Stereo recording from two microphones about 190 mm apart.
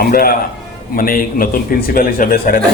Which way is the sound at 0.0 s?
50° left (ahead or behind).